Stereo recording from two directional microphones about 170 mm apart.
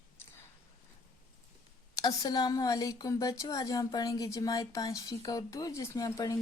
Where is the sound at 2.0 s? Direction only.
20° left (ahead or behind).